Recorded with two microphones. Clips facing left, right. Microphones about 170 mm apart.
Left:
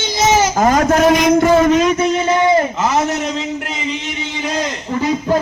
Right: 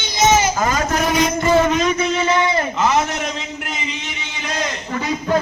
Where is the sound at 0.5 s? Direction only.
55° left (ahead or behind); by 1.5 s 70° left (ahead or behind).